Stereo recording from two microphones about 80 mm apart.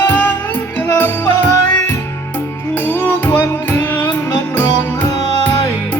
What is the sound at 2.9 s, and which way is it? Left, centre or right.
Music, left.